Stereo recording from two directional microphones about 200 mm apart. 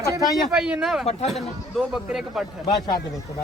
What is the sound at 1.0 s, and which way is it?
Speech, 35° left (ahead or behind).